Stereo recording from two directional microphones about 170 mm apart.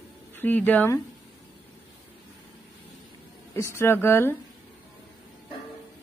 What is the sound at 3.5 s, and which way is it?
Speech, 15° left (ahead or behind).